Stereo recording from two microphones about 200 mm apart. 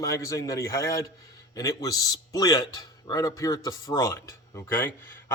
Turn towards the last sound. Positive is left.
turn(degrees=10)  # may be behind; listen again after turning